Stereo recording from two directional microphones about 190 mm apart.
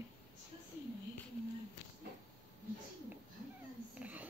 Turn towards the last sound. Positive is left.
turn(degrees=-10)  # may be behind; listen again after turning